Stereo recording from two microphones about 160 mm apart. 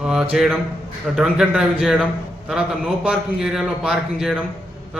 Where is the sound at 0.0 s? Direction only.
5° right (ahead or behind).